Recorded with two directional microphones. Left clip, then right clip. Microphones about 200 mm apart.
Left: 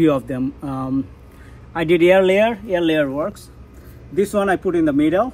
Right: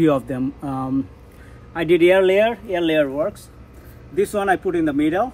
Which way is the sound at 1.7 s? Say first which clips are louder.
Left 1 dB; 20° left (ahead or behind).